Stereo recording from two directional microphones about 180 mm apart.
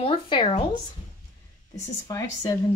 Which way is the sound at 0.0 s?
30° left (ahead or behind).